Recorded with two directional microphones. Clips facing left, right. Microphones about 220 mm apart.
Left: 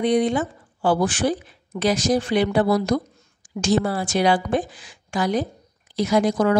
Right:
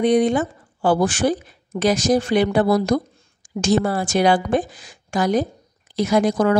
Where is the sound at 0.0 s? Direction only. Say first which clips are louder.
Right 3 dB; 45° right (ahead or behind).